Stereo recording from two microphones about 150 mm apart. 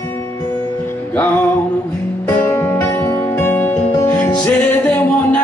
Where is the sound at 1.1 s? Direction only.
10° left (ahead or behind).